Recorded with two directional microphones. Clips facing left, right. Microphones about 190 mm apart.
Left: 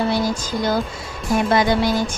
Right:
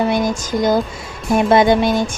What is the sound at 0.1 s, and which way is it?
Music, 20° right (ahead or behind).